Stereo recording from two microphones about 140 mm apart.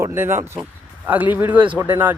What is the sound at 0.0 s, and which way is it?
Speech, 15° right (ahead or behind).